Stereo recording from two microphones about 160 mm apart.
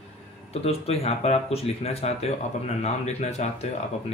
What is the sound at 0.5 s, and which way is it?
Speech, 40° left (ahead or behind).